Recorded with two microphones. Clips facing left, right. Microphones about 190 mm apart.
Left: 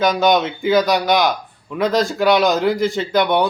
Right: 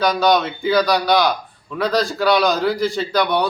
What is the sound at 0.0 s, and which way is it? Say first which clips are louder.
A man's voice: left 1 dB; 20° left (ahead or behind).